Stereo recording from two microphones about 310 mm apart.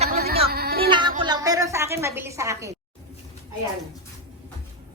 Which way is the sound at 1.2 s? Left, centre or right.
Centre.